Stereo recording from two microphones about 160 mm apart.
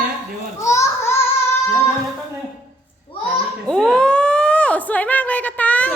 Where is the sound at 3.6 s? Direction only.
5° left (ahead or behind).